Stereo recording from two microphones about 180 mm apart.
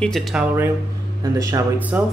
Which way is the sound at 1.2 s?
20° right (ahead or behind).